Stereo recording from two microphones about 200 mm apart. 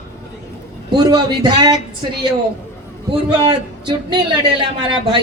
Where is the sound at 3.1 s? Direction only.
25° right (ahead or behind).